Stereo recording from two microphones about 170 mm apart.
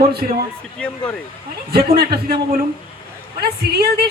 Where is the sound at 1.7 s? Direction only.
65° right (ahead or behind).